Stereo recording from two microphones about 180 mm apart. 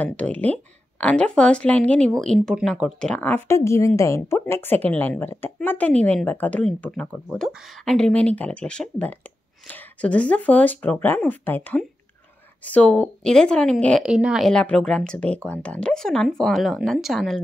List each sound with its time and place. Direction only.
0.0 s speech: 5° left (ahead or behind)